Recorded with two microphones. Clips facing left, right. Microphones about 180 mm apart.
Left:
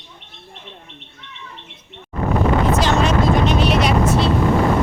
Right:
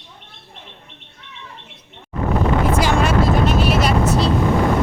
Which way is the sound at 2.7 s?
10° right (ahead or behind).